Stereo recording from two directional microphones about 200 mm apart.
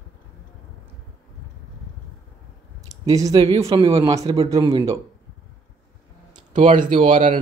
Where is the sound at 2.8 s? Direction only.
20° right (ahead or behind).